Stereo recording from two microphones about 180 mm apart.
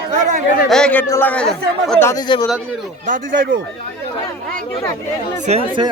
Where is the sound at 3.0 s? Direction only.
50° right (ahead or behind).